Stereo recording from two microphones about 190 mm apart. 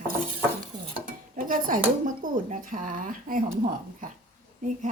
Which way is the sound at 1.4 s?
45° right (ahead or behind).